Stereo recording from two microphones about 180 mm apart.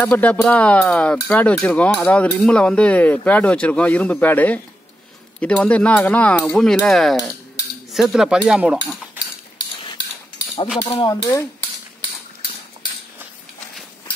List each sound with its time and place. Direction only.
0.0 s speech: 10° left (ahead or behind); by 8.7 s 5° right (ahead or behind)
10.8 s speech: 20° left (ahead or behind)